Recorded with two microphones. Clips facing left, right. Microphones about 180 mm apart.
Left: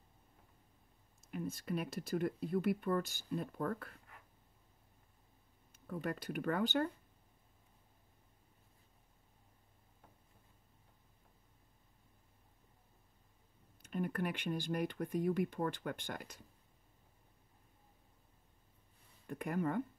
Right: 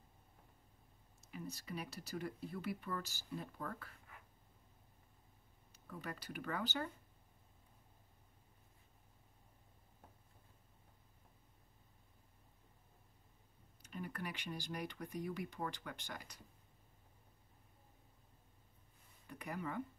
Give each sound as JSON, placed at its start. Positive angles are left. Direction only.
{"t": 1.3, "sound": "speech", "side_deg": 50}
{"t": 5.7, "sound": "speech", "side_deg": 50}
{"t": 13.9, "sound": "speech", "side_deg": 55}
{"t": 19.2, "sound": "speech", "side_deg": 50}